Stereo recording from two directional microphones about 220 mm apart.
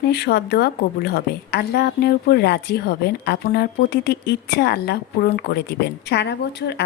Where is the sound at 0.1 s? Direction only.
45° left (ahead or behind).